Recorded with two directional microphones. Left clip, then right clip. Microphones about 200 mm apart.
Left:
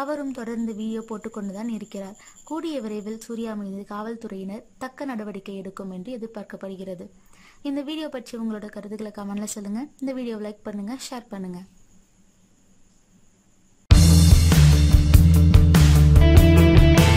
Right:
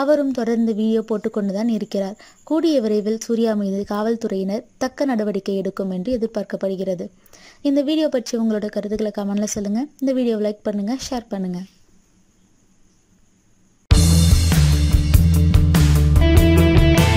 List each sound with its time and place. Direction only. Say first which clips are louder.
0.0 s a woman's voice: right 11 dB; 20° right (ahead or behind)
13.8 s music: right 1 dB; centre (ahead or behind)